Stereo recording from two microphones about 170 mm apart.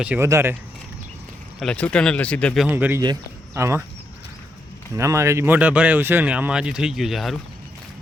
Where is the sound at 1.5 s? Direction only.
5° left (ahead or behind); by 3.8 s 15° right (ahead or behind).